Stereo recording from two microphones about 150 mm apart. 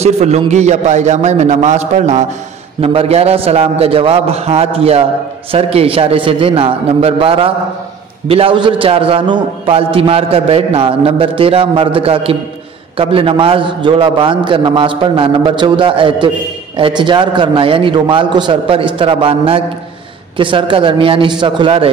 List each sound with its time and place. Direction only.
0.0 s a man's voice: 45° right (ahead or behind)